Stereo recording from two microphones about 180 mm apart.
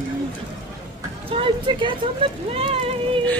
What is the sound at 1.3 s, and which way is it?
Speech, 30° right (ahead or behind).